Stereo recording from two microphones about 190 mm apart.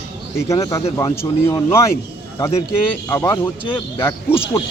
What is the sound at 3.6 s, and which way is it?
Speech, 25° left (ahead or behind).